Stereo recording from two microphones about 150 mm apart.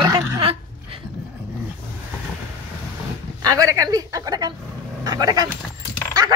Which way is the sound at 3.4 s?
25° right (ahead or behind).